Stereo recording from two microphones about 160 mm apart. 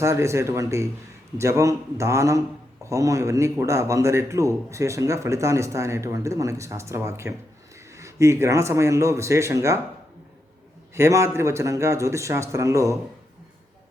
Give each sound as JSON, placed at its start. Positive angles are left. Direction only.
{"t": 0.0, "sound": "a man's voice", "side_deg": -20}
{"t": 10.9, "sound": "speech", "side_deg": -15}